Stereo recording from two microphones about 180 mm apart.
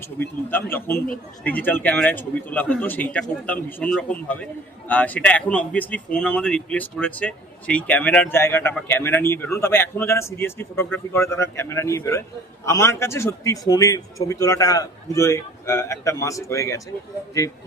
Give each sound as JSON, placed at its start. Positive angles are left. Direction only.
{"t": 0.7, "sound": "a man's voice", "side_deg": 10}